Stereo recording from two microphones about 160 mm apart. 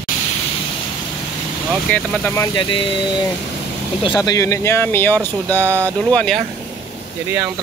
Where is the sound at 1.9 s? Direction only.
10° left (ahead or behind).